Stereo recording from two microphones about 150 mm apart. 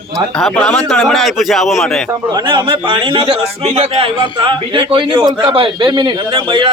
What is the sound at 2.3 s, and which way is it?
A man's voice, 30° right (ahead or behind).